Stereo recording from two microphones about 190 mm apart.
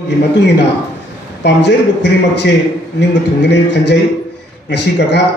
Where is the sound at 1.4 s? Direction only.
65° left (ahead or behind).